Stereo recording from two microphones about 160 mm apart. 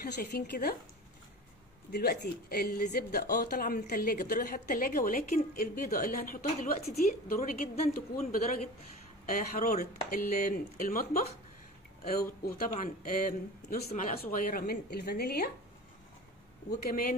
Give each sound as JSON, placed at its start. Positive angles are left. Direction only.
{"t": 0.0, "sound": "a woman's voice", "side_deg": 80}
{"t": 1.9, "sound": "speech", "side_deg": 80}
{"t": 12.2, "sound": "a woman's voice", "side_deg": 70}
{"t": 14.3, "sound": "a woman's voice", "side_deg": 65}
{"t": 16.8, "sound": "speech", "side_deg": 60}